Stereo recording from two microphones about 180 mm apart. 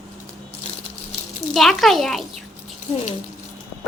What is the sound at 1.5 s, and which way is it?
Speech, centre (ahead or behind).